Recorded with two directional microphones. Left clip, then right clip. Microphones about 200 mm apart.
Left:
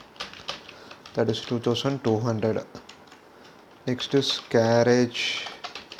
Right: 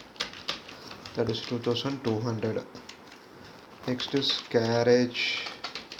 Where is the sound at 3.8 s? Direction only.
40° left (ahead or behind).